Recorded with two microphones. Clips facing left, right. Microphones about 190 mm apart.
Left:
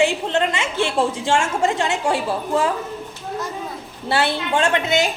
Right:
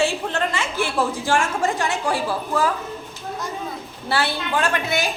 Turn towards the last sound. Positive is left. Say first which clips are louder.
# left 4 dB
turn(degrees=20)  # may be behind; listen again after turning